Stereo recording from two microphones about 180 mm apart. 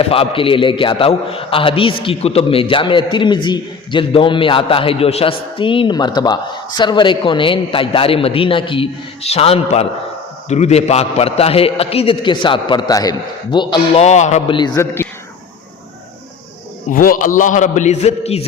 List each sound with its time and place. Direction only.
0.1 s a man's voice: 30° left (ahead or behind)
14.0 s a man's voice: 40° left (ahead or behind); by 15.0 s 20° left (ahead or behind)
16.9 s a man's voice: 50° left (ahead or behind); by 18.4 s 35° left (ahead or behind)